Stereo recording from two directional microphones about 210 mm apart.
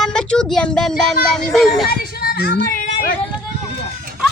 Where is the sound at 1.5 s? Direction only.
Centre (ahead or behind).